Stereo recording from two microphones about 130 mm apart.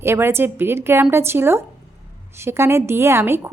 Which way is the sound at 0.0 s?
20° right (ahead or behind).